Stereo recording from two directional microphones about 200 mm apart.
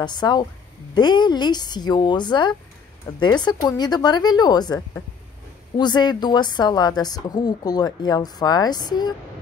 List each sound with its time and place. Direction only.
0.0 s speech: 20° left (ahead or behind)